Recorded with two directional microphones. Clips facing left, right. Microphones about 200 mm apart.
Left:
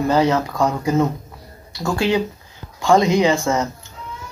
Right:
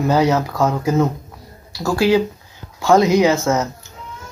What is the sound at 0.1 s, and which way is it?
Speech, 10° right (ahead or behind).